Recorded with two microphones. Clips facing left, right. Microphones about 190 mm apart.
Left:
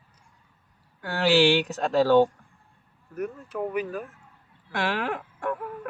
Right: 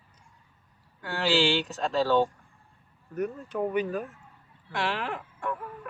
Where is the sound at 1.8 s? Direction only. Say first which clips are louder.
Left 4 dB; 55° left (ahead or behind).